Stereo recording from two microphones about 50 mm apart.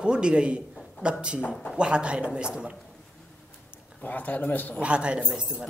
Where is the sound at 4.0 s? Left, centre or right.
Left.